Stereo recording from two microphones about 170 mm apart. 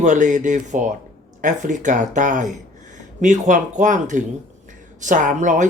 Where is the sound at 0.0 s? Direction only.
45° right (ahead or behind).